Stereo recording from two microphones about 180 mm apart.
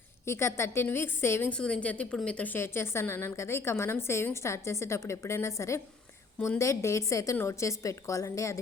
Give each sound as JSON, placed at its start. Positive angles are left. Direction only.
{"t": 0.3, "sound": "a woman's voice", "side_deg": 15}